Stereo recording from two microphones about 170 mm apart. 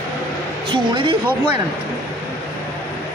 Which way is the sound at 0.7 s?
30° right (ahead or behind).